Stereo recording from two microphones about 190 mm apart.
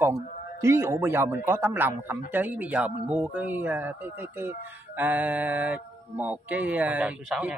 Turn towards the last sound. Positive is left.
turn(degrees=-5)  # may be behind; listen again after turning